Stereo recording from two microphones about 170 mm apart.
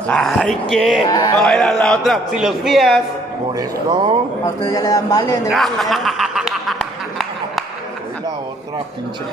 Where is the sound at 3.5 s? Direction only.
25° right (ahead or behind).